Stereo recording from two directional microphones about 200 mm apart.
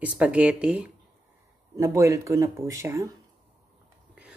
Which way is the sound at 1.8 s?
15° right (ahead or behind).